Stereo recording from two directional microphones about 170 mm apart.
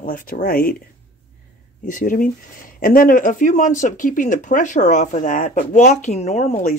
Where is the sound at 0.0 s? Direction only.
55° left (ahead or behind).